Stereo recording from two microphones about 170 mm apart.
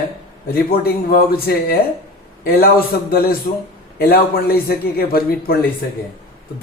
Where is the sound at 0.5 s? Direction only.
65° left (ahead or behind).